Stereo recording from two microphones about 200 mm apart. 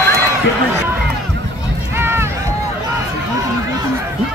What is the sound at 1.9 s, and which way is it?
Run, 10° right (ahead or behind).